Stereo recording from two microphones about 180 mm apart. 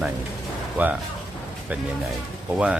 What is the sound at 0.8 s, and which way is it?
Speech, 10° right (ahead or behind).